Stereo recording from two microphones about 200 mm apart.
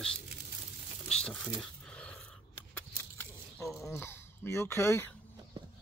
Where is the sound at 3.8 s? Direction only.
10° left (ahead or behind).